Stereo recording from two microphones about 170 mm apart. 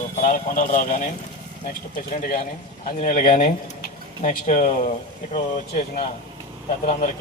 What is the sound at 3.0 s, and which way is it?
Speech, 50° left (ahead or behind).